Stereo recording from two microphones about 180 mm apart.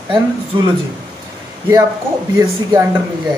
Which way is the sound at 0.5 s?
30° right (ahead or behind).